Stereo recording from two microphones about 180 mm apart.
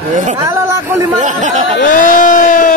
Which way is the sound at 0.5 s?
15° right (ahead or behind).